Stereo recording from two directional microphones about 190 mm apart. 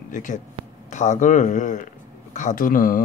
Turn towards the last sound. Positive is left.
turn(degrees=45)  # may be behind; listen again after turning